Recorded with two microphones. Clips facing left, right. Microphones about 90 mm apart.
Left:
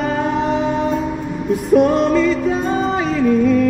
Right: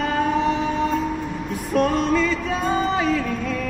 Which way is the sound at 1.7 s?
20° left (ahead or behind).